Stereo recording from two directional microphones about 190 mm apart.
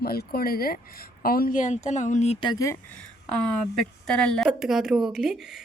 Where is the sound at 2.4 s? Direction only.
20° left (ahead or behind).